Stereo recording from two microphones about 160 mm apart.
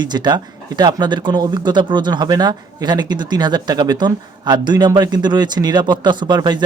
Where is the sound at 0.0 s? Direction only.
25° right (ahead or behind).